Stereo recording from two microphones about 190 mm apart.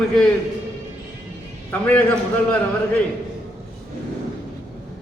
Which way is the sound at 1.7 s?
10° left (ahead or behind).